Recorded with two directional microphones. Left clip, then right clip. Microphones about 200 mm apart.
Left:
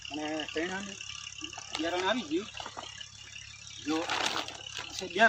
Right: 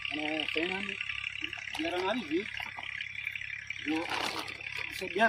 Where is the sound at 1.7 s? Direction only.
5° left (ahead or behind).